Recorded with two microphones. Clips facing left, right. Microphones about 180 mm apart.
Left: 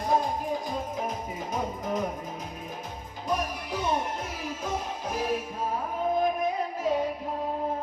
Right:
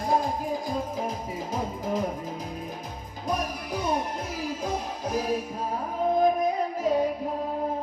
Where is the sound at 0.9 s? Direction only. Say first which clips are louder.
Right 1 dB; 30° right (ahead or behind).